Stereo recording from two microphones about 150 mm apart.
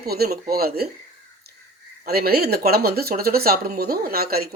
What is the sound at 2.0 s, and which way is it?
Speech, 90° right.